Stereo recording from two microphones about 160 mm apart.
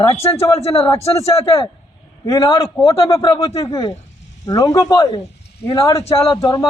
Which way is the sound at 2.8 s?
35° left (ahead or behind).